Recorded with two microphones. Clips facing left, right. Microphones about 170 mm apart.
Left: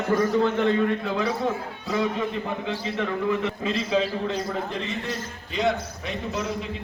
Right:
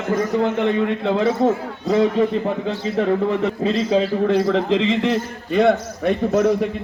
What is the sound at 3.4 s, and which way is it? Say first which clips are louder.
Speech: right 7 dB; 35° right (ahead or behind).